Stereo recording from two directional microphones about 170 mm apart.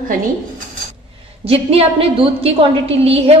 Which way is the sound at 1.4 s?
35° right (ahead or behind).